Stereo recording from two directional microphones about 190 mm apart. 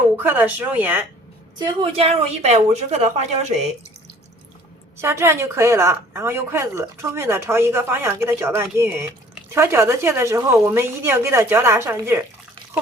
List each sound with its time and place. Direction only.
0.2 s a woman's voice: 10° right (ahead or behind)
1.5 s a woman's voice: 25° right (ahead or behind)
4.9 s a woman's voice: 15° right (ahead or behind)